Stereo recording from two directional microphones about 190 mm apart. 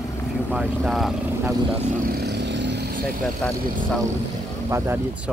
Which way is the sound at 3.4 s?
5° left (ahead or behind).